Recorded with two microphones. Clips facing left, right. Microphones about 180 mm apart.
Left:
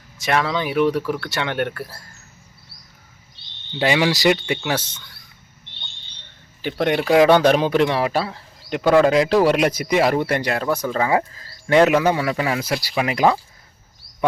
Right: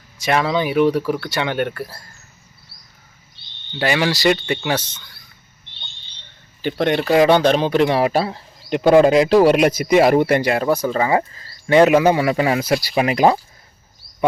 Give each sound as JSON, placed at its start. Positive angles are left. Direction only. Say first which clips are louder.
{"t": 0.2, "sound": "speech", "louder": "right 3 dB", "side_deg": -5}
{"t": 3.8, "sound": "speech", "louder": "left 1 dB", "side_deg": 15}
{"t": 6.6, "sound": "speech", "louder": "right 2 dB", "side_deg": 5}
{"t": 8.1, "sound": "speech", "louder": "right 3 dB", "side_deg": -35}
{"t": 8.7, "sound": "speech", "louder": "right 3 dB", "side_deg": -20}
{"t": 11.9, "sound": "speech", "louder": "right 4 dB", "side_deg": -15}
{"t": 12.3, "sound": "speech", "louder": "right 5 dB", "side_deg": -30}